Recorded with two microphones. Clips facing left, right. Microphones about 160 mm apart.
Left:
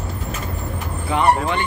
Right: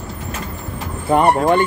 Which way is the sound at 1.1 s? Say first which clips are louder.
Right 5 dB; 45° right (ahead or behind).